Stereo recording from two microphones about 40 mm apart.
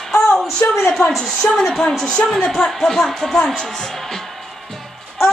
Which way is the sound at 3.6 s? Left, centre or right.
Centre.